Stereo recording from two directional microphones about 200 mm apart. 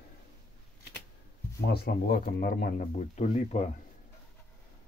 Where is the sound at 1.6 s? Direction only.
50° left (ahead or behind); by 3.6 s 35° left (ahead or behind).